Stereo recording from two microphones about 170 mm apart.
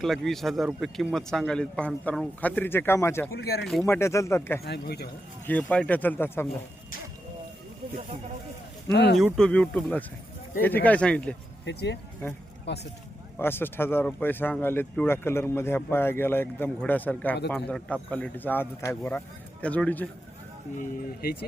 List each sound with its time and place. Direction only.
0.0 s speech: centre (ahead or behind)
3.3 s a man's voice: 70° left (ahead or behind)
3.8 s speech: 15° left (ahead or behind)
4.6 s a man's voice: 70° left (ahead or behind)
5.5 s speech: 10° left (ahead or behind)
8.9 s speech: 90° left
9.1 s speech: centre (ahead or behind)
11.6 s speech: 85° left
13.4 s speech: 15° left (ahead or behind)
20.7 s speech: 60° left (ahead or behind)